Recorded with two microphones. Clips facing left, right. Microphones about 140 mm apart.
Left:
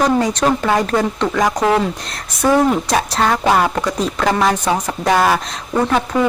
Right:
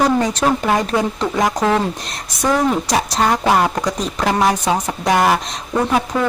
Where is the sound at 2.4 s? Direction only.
5° left (ahead or behind).